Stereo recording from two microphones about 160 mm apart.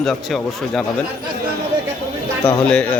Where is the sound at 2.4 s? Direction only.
10° left (ahead or behind).